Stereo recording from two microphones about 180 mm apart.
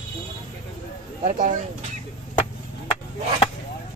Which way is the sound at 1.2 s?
45° right (ahead or behind).